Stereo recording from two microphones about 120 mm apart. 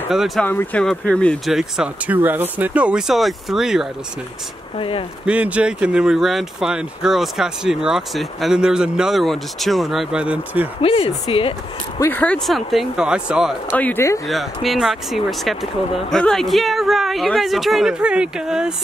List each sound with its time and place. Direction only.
0.4 s speech: 15° left (ahead or behind)
1.5 s speech: 5° right (ahead or behind)
4.7 s speech: 45° left (ahead or behind)
5.2 s speech: 10° right (ahead or behind)
10.8 s speech: 50° left (ahead or behind)
12.1 s speech: 10° left (ahead or behind)
12.4 s speech: centre (ahead or behind)
13.7 s speech: 15° left (ahead or behind)
14.2 s speech: centre (ahead or behind)